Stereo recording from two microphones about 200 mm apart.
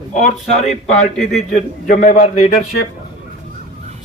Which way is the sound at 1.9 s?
35° left (ahead or behind).